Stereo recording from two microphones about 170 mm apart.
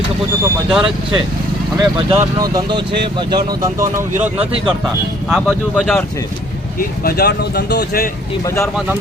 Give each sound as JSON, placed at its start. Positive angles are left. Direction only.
{"t": 0.7, "sound": "speech", "side_deg": -5}
{"t": 1.8, "sound": "speech", "side_deg": -30}
{"t": 4.4, "sound": "speech", "side_deg": -35}
{"t": 5.3, "sound": "speech", "side_deg": 0}
{"t": 6.7, "sound": "speech", "side_deg": 65}
{"t": 8.4, "sound": "speech", "side_deg": 15}